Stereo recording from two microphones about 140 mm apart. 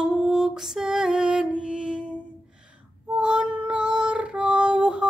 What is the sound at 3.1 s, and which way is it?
Female singing, 5° right (ahead or behind).